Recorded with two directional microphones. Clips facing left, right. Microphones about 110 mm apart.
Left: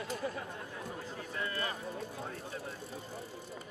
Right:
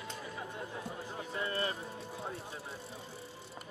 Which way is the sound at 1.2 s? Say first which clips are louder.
Right 3 dB; 30° right (ahead or behind).